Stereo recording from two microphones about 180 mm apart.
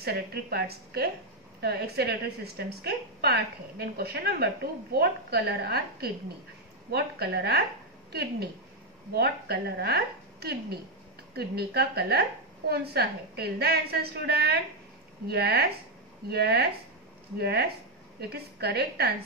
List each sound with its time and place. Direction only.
0.0 s a woman's voice: 60° right (ahead or behind)